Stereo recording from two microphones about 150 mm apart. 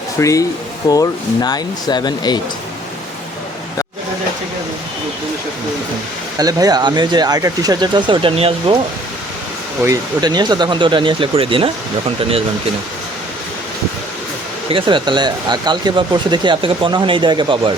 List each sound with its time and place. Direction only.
0.2 s speech: 20° left (ahead or behind)
6.3 s speech: 25° right (ahead or behind)
9.8 s speech: 25° right (ahead or behind)
14.7 s speech: 35° right (ahead or behind)